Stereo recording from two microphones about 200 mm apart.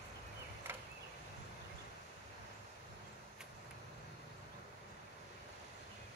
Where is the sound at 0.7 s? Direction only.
10° right (ahead or behind).